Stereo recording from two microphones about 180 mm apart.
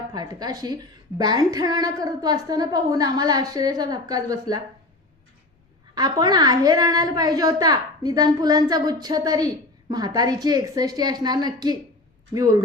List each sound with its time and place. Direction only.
0.1 s a woman's voice: 20° right (ahead or behind)
5.9 s a woman's voice: 20° right (ahead or behind)